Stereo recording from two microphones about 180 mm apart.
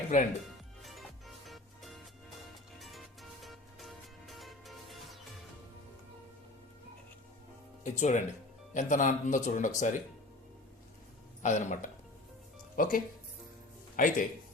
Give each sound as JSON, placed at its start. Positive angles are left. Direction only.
{"t": 0.1, "sound": "speech", "side_deg": 45}
{"t": 0.8, "sound": "music", "side_deg": 0}
{"t": 7.9, "sound": "speech", "side_deg": 40}
{"t": 11.4, "sound": "speech", "side_deg": 45}